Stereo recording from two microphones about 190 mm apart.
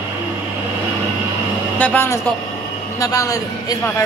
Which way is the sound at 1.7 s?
10° left (ahead or behind).